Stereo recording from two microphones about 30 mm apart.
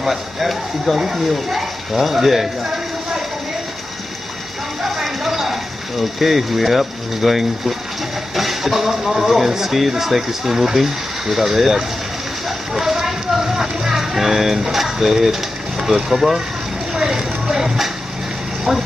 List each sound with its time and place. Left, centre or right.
0.0 s speech: centre
4.8 s a sound: centre
8.4 s speech: centre
12.4 s music: centre
15.8 s speech: centre
16.9 s a sound: right